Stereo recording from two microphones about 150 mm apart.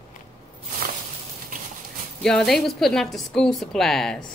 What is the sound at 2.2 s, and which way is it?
Speech, 5° left (ahead or behind).